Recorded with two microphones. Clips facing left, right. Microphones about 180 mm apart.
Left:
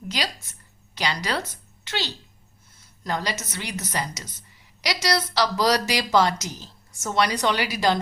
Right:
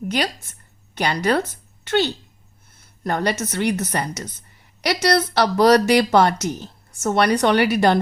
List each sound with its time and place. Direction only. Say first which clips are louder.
0.1 s a woman's voice: right 5 dB; 55° right (ahead or behind)